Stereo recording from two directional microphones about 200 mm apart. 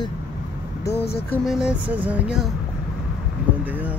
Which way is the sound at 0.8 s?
55° left (ahead or behind).